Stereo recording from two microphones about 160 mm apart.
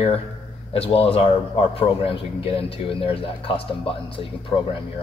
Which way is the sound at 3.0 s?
35° left (ahead or behind).